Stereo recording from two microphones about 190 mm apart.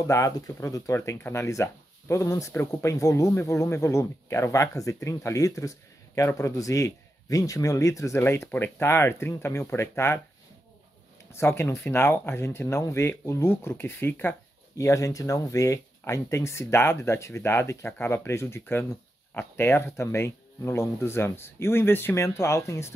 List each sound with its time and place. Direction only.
0.0 s speech: 15° left (ahead or behind)
11.3 s speech: 15° left (ahead or behind)